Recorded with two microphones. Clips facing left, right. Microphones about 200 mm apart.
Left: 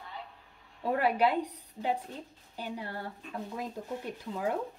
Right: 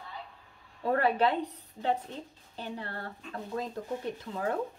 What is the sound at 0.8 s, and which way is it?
A woman's voice, 10° left (ahead or behind).